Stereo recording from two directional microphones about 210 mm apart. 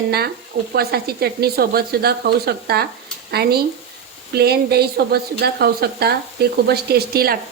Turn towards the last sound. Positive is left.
turn(degrees=-45)  # may be behind; listen again after turning